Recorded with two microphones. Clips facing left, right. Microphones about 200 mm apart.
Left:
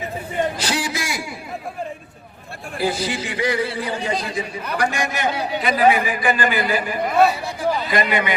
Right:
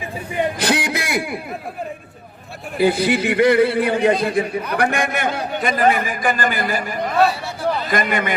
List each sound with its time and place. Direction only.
0.6 s a sound: 60° right (ahead or behind)
2.7 s a man's voice: 60° right (ahead or behind)
7.0 s speech: 10° left (ahead or behind)
7.9 s a man's voice: 45° right (ahead or behind)